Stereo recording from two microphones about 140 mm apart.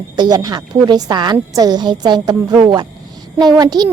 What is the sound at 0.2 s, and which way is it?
A woman's voice, 30° right (ahead or behind).